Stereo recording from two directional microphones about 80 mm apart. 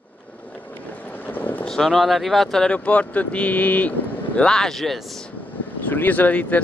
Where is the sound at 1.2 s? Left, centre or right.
Left.